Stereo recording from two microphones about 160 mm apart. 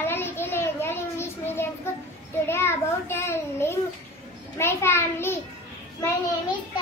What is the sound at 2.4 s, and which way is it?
A child's voice, 15° left (ahead or behind).